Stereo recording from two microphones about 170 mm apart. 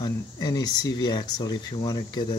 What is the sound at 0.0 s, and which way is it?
Speech, 25° left (ahead or behind).